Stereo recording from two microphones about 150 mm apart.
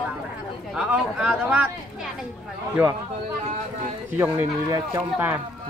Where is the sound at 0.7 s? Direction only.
5° right (ahead or behind).